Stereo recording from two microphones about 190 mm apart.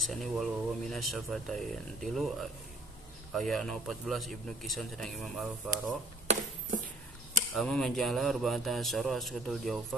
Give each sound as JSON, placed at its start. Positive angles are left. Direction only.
{"t": 0.0, "sound": "speech", "side_deg": 0}
{"t": 7.5, "sound": "speech", "side_deg": 0}